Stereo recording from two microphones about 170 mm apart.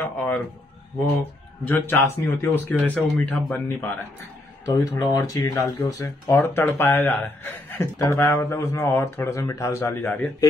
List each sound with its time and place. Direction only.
0.0 s speech: 10° left (ahead or behind)